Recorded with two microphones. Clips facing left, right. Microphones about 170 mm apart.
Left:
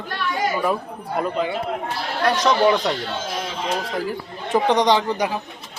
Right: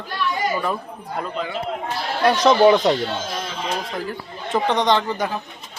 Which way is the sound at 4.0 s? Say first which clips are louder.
Left 2 dB; 10° left (ahead or behind).